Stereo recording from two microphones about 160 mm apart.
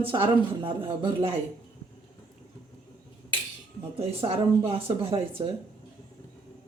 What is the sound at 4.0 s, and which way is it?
Speech, 35° right (ahead or behind).